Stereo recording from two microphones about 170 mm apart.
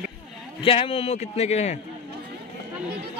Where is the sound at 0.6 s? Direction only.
30° left (ahead or behind).